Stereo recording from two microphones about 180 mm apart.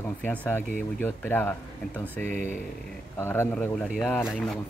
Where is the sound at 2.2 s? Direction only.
40° right (ahead or behind).